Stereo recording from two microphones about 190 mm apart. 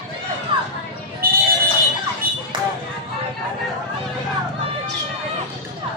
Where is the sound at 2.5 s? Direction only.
25° right (ahead or behind).